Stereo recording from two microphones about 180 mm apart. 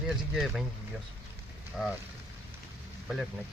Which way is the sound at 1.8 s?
5° right (ahead or behind).